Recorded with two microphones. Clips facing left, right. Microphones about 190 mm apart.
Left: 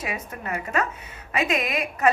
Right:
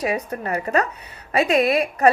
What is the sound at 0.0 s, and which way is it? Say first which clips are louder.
Speech: right 8 dB; 35° right (ahead or behind).